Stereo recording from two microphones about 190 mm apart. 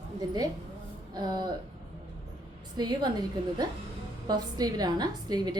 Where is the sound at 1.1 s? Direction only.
20° right (ahead or behind).